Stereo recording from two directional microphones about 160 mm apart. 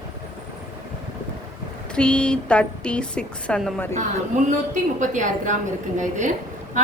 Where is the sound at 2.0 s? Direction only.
5° left (ahead or behind).